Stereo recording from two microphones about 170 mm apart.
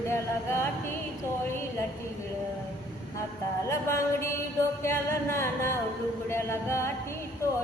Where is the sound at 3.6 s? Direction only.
15° left (ahead or behind).